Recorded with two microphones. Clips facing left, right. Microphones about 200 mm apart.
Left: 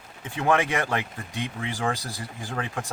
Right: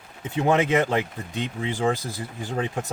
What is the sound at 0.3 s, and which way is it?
Speech, 20° right (ahead or behind).